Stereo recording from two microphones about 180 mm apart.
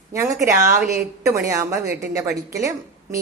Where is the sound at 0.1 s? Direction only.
15° right (ahead or behind).